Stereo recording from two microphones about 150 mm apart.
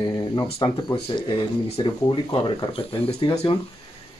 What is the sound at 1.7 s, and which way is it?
Speech, 35° left (ahead or behind).